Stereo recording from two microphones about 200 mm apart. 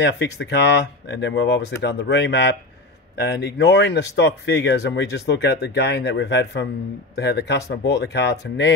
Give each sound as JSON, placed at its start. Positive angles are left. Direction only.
{"t": 0.0, "sound": "speech", "side_deg": 60}